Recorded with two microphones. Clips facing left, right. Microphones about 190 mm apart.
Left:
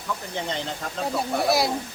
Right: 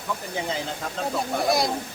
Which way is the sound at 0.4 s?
5° right (ahead or behind).